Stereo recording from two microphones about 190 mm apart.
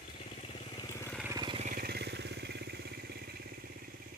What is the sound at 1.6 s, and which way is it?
Motorcycle, 50° right (ahead or behind).